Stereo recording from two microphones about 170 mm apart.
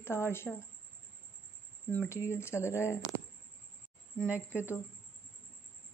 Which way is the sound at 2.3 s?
15° left (ahead or behind).